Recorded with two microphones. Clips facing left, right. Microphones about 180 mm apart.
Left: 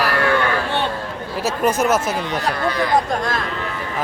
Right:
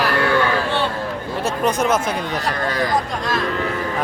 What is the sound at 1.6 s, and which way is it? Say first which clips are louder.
Speech: left 1 dB; 10° left (ahead or behind).